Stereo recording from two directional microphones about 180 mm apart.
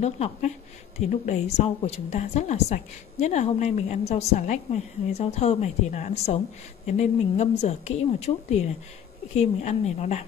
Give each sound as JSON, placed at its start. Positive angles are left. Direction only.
{"t": 0.0, "sound": "speech", "side_deg": 40}